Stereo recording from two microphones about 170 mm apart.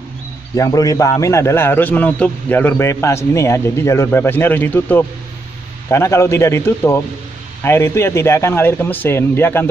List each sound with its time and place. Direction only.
0.6 s a man's voice: 20° left (ahead or behind)